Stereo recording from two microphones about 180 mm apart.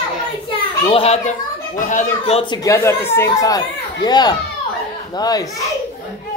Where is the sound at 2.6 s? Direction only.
15° left (ahead or behind).